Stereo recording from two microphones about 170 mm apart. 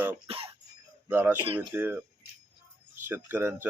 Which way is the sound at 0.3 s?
35° right (ahead or behind).